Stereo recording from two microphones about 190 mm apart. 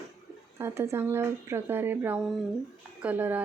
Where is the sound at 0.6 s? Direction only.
15° right (ahead or behind).